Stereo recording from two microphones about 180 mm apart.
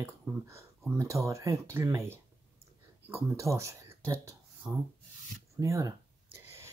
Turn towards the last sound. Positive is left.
turn(degrees=-15)  # may be behind; listen again after turning